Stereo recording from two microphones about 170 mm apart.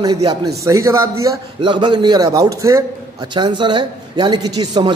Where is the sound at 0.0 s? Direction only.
25° right (ahead or behind).